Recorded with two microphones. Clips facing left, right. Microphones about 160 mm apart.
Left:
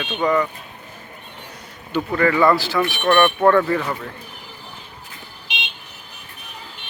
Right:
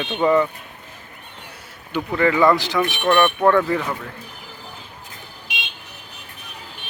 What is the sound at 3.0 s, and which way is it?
Speech, 5° right (ahead or behind).